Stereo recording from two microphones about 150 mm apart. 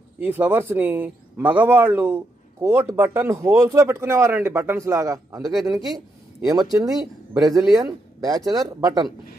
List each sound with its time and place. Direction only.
0.2 s a man's voice: 10° right (ahead or behind)